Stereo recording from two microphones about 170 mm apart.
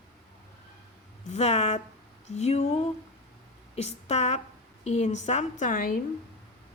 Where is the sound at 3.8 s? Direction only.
40° left (ahead or behind).